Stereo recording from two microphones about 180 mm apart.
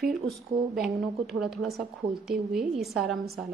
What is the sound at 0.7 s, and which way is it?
Speech, centre (ahead or behind).